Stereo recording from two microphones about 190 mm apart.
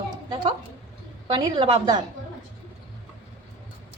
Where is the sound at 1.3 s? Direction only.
25° right (ahead or behind).